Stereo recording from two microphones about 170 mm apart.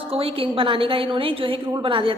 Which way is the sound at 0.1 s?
35° right (ahead or behind).